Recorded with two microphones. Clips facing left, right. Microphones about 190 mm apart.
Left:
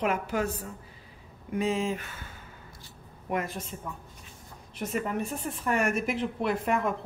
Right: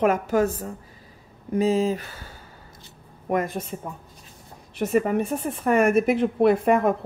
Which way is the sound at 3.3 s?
50° right (ahead or behind).